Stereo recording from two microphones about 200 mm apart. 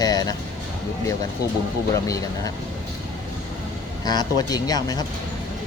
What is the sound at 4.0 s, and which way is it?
A man's voice, 20° left (ahead or behind).